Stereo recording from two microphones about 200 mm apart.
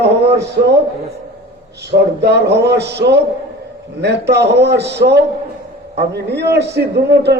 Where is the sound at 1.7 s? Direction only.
55° right (ahead or behind).